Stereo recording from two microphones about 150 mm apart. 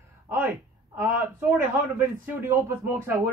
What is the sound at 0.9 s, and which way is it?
Speech, 20° right (ahead or behind).